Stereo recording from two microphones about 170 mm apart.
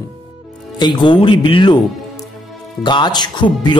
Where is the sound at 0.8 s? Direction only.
25° left (ahead or behind).